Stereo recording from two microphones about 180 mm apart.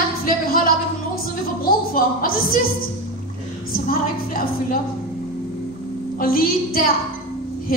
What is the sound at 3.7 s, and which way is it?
Speech, 50° left (ahead or behind).